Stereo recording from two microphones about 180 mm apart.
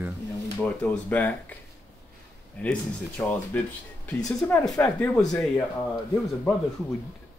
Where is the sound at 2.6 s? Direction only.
10° left (ahead or behind).